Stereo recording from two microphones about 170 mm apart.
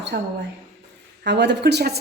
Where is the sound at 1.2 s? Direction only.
90° right.